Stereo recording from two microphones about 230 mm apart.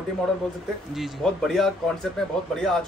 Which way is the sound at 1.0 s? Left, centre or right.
Centre.